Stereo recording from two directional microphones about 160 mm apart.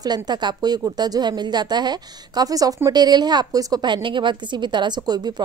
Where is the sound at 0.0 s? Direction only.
25° right (ahead or behind).